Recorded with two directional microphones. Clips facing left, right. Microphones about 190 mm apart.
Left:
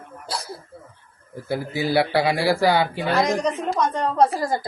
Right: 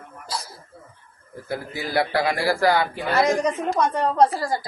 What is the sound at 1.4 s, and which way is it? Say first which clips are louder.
A man's voice: left 5 dB; 25° left (ahead or behind).